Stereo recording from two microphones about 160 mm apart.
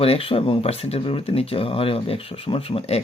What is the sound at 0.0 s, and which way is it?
Speech, 35° left (ahead or behind).